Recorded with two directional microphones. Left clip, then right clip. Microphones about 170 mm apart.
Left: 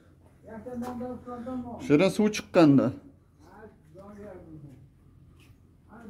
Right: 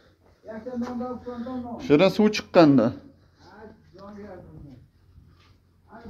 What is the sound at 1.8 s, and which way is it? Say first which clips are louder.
Speech: right 4 dB; 20° left (ahead or behind).